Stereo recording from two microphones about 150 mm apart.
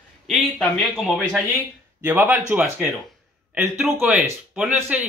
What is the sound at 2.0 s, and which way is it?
Speech, 10° right (ahead or behind).